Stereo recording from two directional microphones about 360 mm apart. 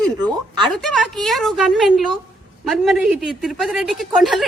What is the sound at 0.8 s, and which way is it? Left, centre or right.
A man's voice, centre.